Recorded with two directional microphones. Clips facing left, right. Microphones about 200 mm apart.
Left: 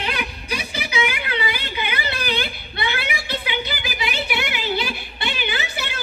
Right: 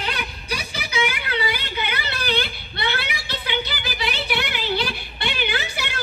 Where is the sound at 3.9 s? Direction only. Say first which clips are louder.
Right 1 dB; 10° left (ahead or behind).